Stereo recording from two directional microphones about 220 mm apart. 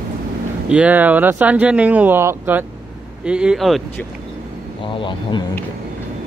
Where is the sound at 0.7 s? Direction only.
5° right (ahead or behind).